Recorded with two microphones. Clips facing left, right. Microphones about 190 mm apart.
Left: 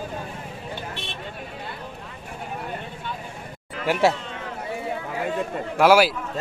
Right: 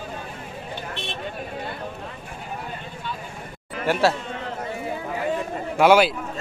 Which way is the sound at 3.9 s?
15° left (ahead or behind).